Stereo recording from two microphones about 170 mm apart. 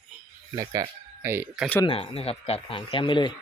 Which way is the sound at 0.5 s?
20° right (ahead or behind).